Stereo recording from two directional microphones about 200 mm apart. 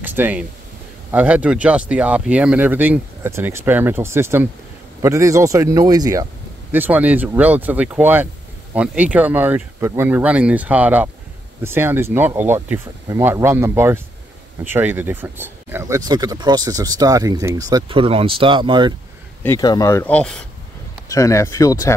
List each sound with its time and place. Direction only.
0.0 s speech: 10° right (ahead or behind)
19.4 s speech: 15° left (ahead or behind)
21.1 s speech: 15° left (ahead or behind)